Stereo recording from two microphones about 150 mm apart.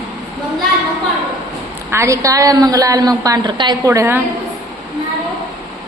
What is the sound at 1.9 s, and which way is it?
A woman's voice, 20° right (ahead or behind).